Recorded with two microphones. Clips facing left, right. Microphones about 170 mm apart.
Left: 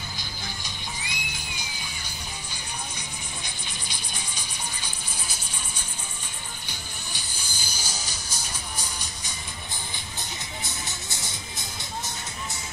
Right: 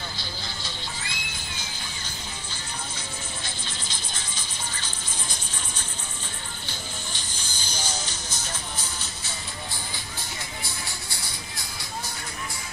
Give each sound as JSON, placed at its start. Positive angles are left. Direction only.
{"t": 0.6, "sound": "music", "side_deg": 15}
{"t": 10.6, "sound": "music", "side_deg": 20}